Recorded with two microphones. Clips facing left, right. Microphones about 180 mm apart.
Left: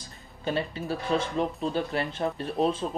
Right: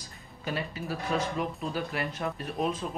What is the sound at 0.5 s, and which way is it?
Speech, 30° left (ahead or behind).